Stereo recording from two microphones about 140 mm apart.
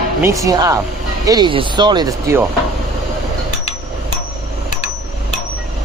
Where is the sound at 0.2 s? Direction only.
20° right (ahead or behind).